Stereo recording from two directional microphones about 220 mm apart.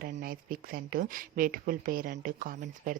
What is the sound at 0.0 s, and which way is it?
Speech, 40° right (ahead or behind).